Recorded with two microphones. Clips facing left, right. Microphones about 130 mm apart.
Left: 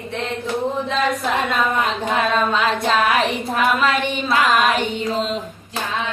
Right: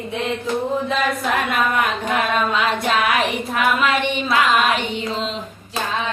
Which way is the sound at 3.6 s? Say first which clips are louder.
Even; 35° left (ahead or behind).